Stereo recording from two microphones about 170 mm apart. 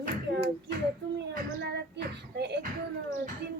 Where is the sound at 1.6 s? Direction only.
80° right.